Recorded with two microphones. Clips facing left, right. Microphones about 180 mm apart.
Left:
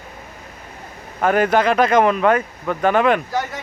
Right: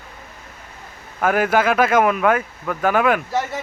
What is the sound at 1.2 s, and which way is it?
Speech, 5° right (ahead or behind).